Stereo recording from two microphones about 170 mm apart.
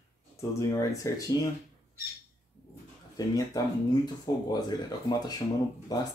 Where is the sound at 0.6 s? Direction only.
20° left (ahead or behind).